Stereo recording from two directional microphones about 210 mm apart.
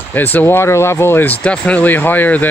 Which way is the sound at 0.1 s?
10° left (ahead or behind).